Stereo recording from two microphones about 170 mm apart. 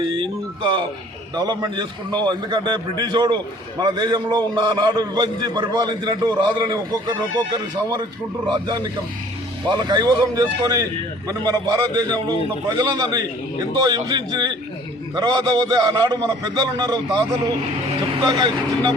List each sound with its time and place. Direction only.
1.4 s a man's voice: 25° right (ahead or behind)
18.3 s a man's voice: 25° right (ahead or behind)